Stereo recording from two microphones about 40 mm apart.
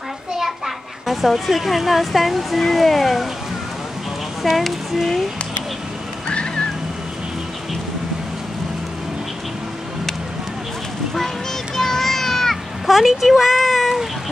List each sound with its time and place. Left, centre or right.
1.0 s speech: centre
4.4 s speech: centre
6.2 s a sound: left
11.7 s cat: centre